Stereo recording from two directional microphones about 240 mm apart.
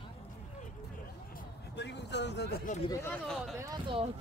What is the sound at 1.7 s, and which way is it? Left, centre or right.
Vehicle, left.